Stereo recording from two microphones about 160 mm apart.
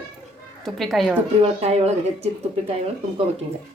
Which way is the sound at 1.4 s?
40° right (ahead or behind).